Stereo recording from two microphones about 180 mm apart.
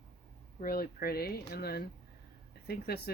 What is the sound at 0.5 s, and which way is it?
Speech, 55° left (ahead or behind).